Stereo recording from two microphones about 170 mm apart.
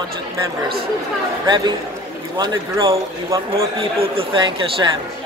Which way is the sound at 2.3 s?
25° right (ahead or behind).